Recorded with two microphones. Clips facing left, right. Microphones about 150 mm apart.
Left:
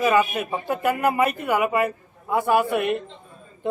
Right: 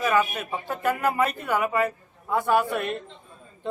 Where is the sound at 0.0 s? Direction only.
10° left (ahead or behind).